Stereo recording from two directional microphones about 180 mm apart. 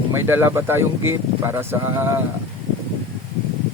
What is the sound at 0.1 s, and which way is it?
Speech, 15° right (ahead or behind).